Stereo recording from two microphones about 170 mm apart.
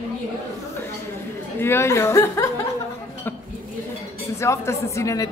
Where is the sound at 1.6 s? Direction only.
15° left (ahead or behind).